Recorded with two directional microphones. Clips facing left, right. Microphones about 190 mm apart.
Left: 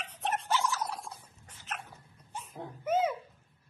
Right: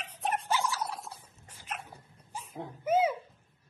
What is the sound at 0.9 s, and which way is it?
Dog, 5° right (ahead or behind).